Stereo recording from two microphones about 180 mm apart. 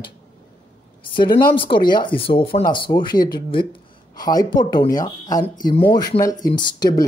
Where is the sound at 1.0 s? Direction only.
25° left (ahead or behind).